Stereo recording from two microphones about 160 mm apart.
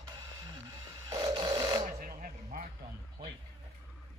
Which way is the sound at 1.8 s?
60° right (ahead or behind).